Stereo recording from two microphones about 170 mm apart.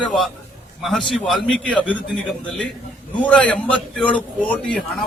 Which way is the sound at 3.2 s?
5° left (ahead or behind).